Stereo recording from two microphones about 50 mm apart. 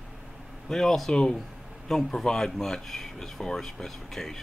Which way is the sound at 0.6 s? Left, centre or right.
Centre.